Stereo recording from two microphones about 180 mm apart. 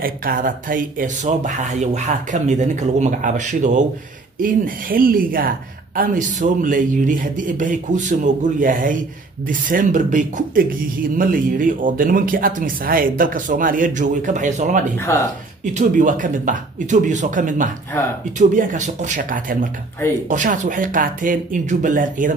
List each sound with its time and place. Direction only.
0.0 s speech: 55° right (ahead or behind)